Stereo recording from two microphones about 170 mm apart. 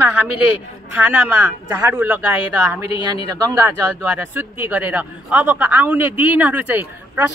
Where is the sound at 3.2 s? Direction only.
20° right (ahead or behind).